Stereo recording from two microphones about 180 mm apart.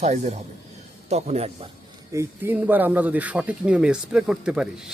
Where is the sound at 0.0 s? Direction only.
40° right (ahead or behind).